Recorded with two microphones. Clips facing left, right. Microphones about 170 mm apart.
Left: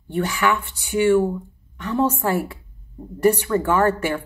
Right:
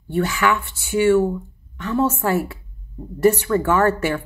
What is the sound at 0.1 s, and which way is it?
Speech, 15° left (ahead or behind).